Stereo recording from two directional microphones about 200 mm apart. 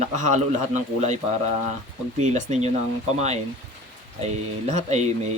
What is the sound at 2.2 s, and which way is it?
Speech, 35° right (ahead or behind).